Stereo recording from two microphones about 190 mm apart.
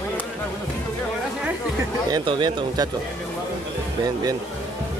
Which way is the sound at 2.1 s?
20° right (ahead or behind).